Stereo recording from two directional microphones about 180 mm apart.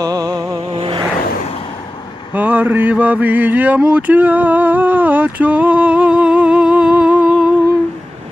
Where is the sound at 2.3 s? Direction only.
10° right (ahead or behind).